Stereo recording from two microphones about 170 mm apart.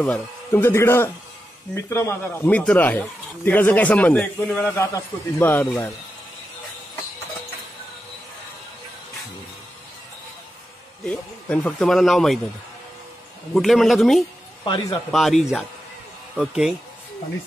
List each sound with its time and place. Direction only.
0.0 s speech: 10° left (ahead or behind)
11.1 s speech: 5° left (ahead or behind)
13.6 s speech: centre (ahead or behind)
14.6 s a man's voice: 25° left (ahead or behind)
15.0 s speech: centre (ahead or behind)